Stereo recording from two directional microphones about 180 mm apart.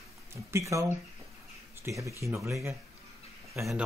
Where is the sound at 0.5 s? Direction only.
15° right (ahead or behind).